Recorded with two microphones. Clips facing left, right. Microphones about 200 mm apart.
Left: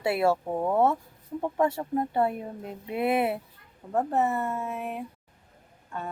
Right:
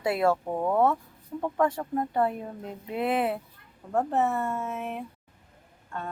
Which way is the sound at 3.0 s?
10° left (ahead or behind).